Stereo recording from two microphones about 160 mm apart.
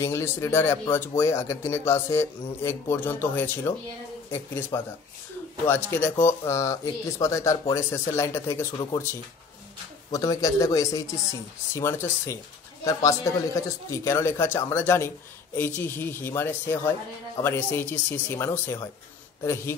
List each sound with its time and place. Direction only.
0.0 s a man's voice: 15° left (ahead or behind)